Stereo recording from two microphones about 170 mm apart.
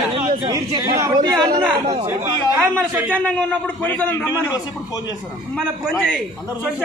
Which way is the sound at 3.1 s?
5° left (ahead or behind).